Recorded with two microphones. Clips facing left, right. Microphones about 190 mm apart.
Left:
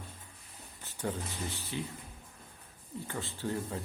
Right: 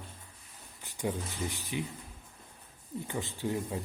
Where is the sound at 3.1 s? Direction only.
15° right (ahead or behind).